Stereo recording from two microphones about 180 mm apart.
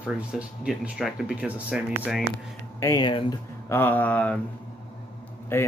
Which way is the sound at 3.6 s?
10° left (ahead or behind).